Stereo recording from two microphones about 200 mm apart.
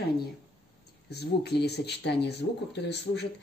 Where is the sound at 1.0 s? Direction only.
55° left (ahead or behind).